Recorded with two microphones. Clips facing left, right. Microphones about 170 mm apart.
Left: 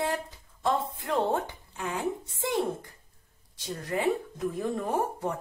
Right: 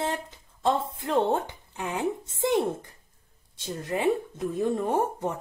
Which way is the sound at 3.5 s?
25° right (ahead or behind).